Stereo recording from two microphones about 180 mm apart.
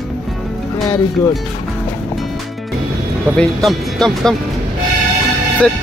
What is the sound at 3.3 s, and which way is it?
Speech, centre (ahead or behind).